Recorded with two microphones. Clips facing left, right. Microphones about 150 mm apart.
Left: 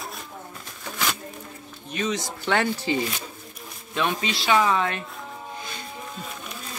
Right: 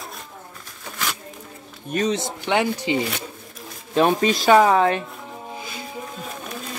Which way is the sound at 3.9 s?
40° right (ahead or behind).